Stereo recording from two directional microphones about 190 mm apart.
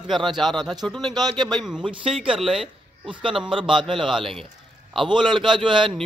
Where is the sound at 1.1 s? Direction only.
20° right (ahead or behind).